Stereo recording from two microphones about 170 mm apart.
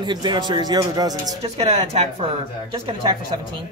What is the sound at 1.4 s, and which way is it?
Speech, 40° right (ahead or behind).